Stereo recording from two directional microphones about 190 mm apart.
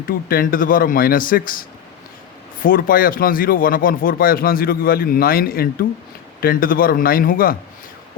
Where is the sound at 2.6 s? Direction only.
50° left (ahead or behind).